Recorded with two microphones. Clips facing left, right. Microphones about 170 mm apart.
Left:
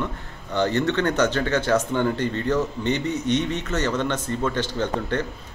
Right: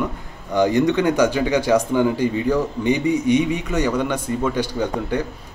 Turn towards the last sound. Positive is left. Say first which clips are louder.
# right 2 dB
turn(degrees=-10)  # may be behind; listen again after turning